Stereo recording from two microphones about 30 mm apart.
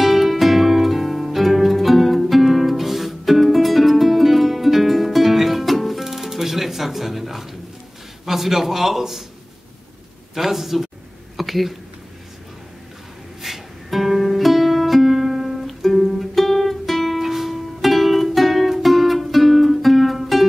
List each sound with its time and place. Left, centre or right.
0.0 s music: centre
8.3 s a man's voice: centre
10.3 s a man's voice: centre
11.3 s a sound: centre
13.4 s music: centre
17.2 s music: centre